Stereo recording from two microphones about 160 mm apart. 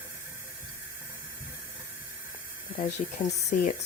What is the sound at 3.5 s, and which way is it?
Speech, 55° left (ahead or behind).